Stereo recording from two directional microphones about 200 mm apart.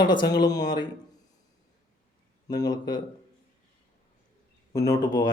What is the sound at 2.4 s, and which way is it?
Speech, 20° left (ahead or behind).